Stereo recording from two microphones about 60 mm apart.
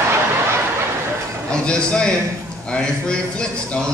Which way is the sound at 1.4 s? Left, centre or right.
Centre.